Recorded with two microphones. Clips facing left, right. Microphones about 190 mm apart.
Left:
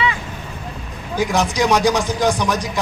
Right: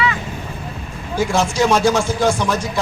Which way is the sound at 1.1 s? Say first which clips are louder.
Right 1 dB; 15° left (ahead or behind).